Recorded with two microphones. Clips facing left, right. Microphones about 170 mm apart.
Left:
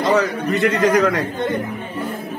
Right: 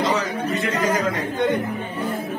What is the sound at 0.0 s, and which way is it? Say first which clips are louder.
Speech: left 5 dB; 65° left (ahead or behind).